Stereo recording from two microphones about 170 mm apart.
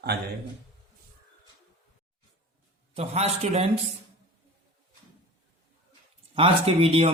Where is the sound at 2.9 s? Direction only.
40° right (ahead or behind).